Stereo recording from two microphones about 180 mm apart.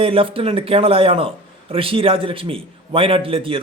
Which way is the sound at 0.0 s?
30° right (ahead or behind).